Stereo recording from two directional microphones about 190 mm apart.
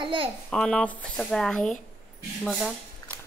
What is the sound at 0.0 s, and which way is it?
Speech, 25° right (ahead or behind).